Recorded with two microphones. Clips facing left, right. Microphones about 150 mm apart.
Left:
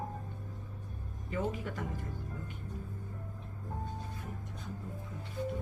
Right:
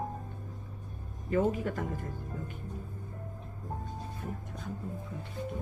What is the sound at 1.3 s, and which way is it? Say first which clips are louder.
Speech: right 7 dB; 50° right (ahead or behind).